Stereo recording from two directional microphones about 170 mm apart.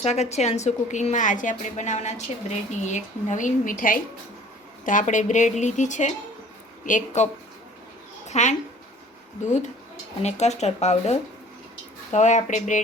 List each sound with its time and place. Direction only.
0.0 s a woman's voice: 40° left (ahead or behind)
8.3 s a woman's voice: 45° left (ahead or behind)